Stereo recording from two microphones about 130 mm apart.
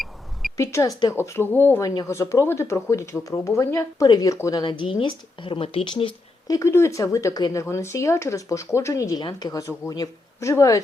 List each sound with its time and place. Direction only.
0.5 s speech: 25° left (ahead or behind)
4.6 s speech: 40° left (ahead or behind)
6.5 s speech: 20° left (ahead or behind)